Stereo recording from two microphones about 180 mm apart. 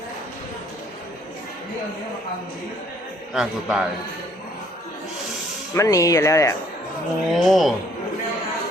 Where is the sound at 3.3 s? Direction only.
5° right (ahead or behind).